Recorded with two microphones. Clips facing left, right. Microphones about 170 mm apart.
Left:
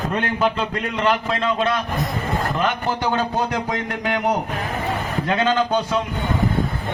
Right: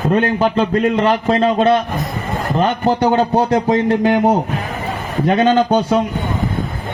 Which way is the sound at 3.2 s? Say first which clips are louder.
Right 8 dB; 40° right (ahead or behind).